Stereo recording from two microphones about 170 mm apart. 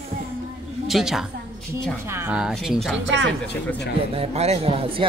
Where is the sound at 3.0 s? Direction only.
90° right.